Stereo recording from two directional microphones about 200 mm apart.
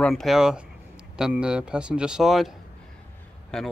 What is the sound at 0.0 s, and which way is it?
Speech, centre (ahead or behind).